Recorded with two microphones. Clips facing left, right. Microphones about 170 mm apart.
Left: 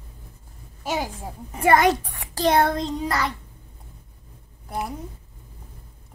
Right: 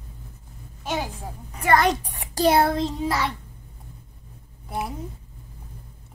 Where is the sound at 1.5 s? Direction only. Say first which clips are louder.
Left 2 dB; 25° left (ahead or behind).